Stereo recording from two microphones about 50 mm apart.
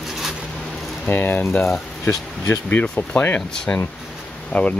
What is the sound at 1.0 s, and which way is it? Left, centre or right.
Speech, left.